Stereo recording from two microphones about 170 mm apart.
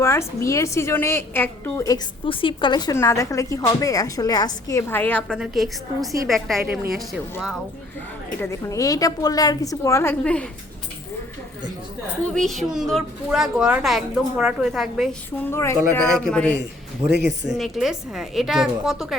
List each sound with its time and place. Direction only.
0.0 s a woman's voice: 15° left (ahead or behind)
5.4 s a woman's voice: centre (ahead or behind)
8.4 s a woman's voice: 15° left (ahead or behind)
12.3 s a woman's voice: centre (ahead or behind)
15.4 s a woman's voice: 15° left (ahead or behind)
17.1 s speech: 90° right
17.6 s a woman's voice: centre (ahead or behind)